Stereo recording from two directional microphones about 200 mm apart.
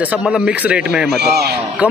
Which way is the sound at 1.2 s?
55° right (ahead or behind).